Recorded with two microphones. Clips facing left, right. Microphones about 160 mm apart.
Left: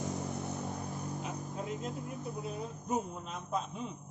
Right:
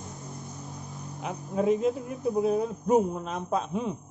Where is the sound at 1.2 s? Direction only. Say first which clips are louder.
Right 12 dB; 90° right.